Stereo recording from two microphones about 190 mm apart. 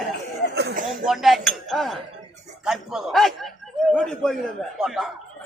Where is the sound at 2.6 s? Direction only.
5° right (ahead or behind).